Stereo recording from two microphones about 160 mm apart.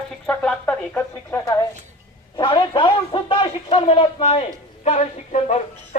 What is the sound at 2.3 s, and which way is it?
A man's voice, 35° left (ahead or behind).